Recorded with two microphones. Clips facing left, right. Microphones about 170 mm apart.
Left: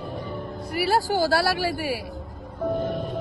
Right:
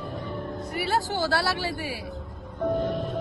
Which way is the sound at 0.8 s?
40° left (ahead or behind).